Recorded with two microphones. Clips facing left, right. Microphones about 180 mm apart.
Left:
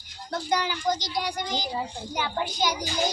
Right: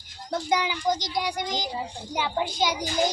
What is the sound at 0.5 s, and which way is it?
A child's voice, 20° right (ahead or behind).